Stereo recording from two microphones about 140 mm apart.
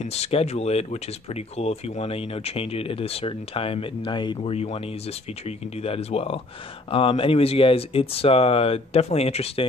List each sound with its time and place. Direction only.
0.0 s speech: 50° left (ahead or behind)
4.4 s speech: 45° left (ahead or behind)
5.8 s speech: 45° left (ahead or behind)